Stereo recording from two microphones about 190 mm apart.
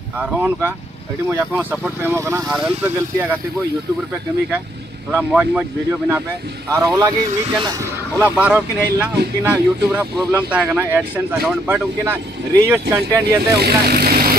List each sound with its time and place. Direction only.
0.2 s speech: 10° right (ahead or behind)
5.1 s speech: 5° right (ahead or behind)
8.2 s speech: 5° right (ahead or behind)
13.6 s speech: 55° right (ahead or behind)